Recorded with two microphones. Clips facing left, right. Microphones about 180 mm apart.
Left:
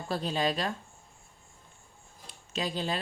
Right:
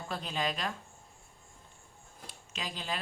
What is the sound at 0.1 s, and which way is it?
Speech, 35° left (ahead or behind).